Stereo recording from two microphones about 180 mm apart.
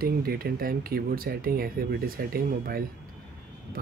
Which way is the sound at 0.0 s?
55° right (ahead or behind).